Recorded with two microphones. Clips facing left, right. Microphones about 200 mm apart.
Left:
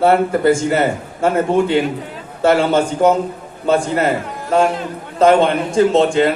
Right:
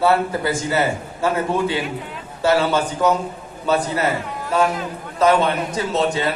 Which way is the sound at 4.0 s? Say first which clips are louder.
Left 4 dB; 50° left (ahead or behind).